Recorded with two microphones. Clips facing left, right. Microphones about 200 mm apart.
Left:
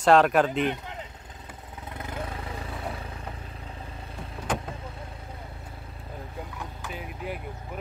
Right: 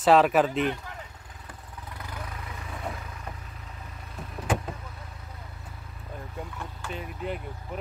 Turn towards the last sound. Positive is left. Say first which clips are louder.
# right 2 dB
turn(degrees=5)  # may be behind; listen again after turning